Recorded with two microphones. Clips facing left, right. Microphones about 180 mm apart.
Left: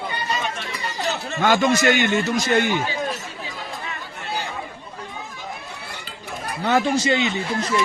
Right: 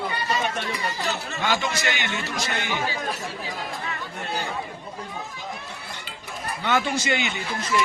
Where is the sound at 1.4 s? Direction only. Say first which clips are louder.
Left 9 dB; 50° left (ahead or behind).